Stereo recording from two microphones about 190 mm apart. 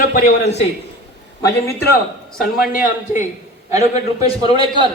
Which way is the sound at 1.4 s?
15° left (ahead or behind).